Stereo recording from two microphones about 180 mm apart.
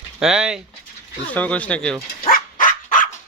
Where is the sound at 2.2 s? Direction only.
50° left (ahead or behind).